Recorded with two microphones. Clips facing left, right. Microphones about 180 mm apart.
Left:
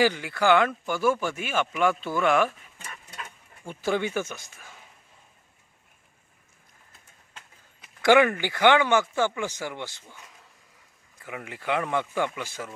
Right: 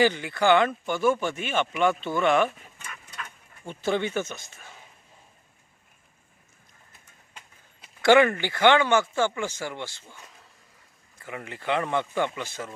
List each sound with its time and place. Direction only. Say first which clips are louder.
0.0 s speech: right 1 dB; 5° left (ahead or behind)
2.7 s a sound: even; 35° left (ahead or behind)
3.7 s speech: even; 10° left (ahead or behind)
8.0 s speech: right 1 dB; 10° left (ahead or behind)
11.2 s speech: even; 10° left (ahead or behind)